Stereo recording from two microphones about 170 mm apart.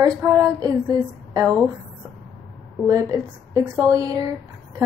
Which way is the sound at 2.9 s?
20° right (ahead or behind).